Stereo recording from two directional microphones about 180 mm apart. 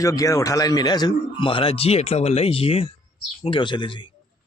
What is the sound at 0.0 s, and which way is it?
A man's voice, 20° left (ahead or behind).